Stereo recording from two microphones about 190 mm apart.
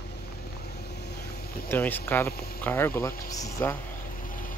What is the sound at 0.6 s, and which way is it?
Vehicle, 60° left (ahead or behind).